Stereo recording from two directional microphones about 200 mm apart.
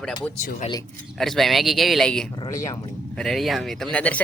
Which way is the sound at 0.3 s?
40° left (ahead or behind).